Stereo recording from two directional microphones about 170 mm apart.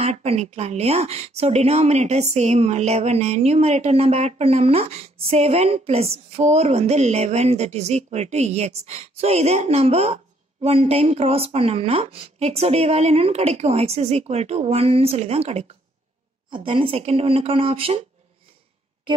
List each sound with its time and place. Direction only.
0.0 s speech: 40° right (ahead or behind)